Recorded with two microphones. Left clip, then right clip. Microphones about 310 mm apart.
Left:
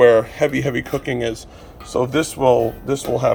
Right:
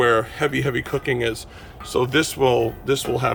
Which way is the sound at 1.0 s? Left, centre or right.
Right.